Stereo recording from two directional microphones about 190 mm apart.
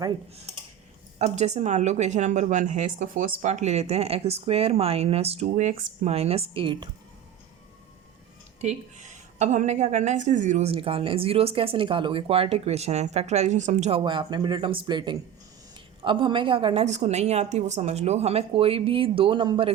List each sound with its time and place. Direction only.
1.2 s a woman's voice: 35° right (ahead or behind)
8.6 s a woman's voice: 40° right (ahead or behind)
14.0 s a woman's voice: 25° right (ahead or behind)